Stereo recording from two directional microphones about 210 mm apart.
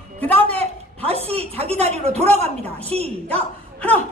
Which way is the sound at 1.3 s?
30° right (ahead or behind).